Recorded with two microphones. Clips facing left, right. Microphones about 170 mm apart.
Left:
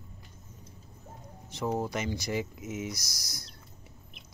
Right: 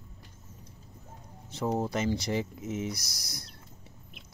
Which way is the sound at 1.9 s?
30° right (ahead or behind).